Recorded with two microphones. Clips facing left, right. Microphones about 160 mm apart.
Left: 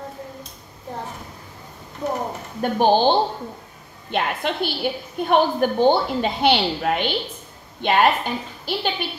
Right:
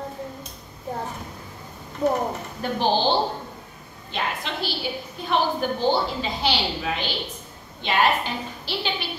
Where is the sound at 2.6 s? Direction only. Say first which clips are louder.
Left 4 dB; 50° left (ahead or behind).